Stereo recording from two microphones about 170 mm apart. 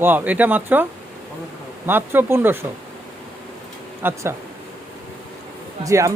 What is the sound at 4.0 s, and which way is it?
Speech, 15° right (ahead or behind).